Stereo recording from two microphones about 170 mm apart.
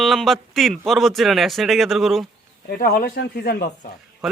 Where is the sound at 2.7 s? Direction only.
65° left (ahead or behind).